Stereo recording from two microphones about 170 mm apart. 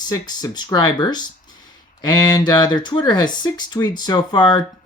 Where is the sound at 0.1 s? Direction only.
20° left (ahead or behind).